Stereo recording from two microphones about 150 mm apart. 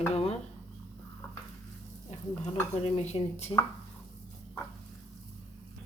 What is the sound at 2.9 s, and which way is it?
Speech, 45° left (ahead or behind).